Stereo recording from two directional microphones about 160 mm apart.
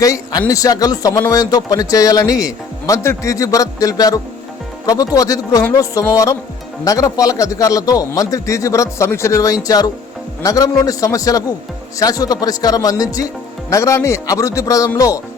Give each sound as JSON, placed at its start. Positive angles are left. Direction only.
{"t": 0.0, "sound": "a man's voice", "side_deg": 20}